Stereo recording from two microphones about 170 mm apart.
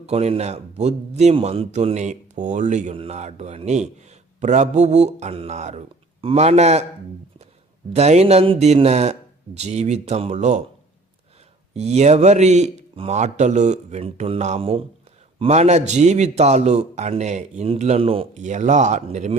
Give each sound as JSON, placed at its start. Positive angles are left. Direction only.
{"t": 0.0, "sound": "a man's voice", "side_deg": -35}
{"t": 7.9, "sound": "a man's voice", "side_deg": -40}
{"t": 11.7, "sound": "a man's voice", "side_deg": -40}